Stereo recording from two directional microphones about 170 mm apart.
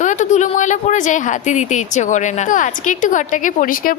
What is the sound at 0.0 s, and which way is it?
Speech, 45° left (ahead or behind).